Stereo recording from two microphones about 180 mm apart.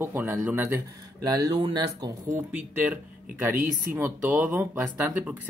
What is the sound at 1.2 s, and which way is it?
Speech, 20° right (ahead or behind).